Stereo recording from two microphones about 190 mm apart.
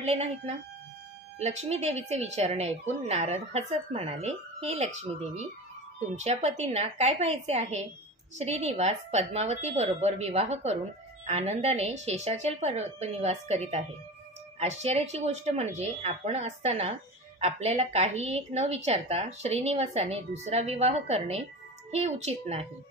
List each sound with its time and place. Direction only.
0.0 s a woman's voice: 35° right (ahead or behind)